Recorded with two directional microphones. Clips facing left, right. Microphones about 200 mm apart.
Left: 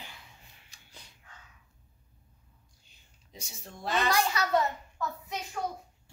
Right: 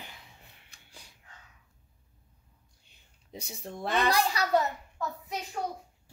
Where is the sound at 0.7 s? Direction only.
55° right (ahead or behind).